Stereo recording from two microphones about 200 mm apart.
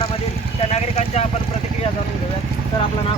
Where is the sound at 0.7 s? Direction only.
30° left (ahead or behind).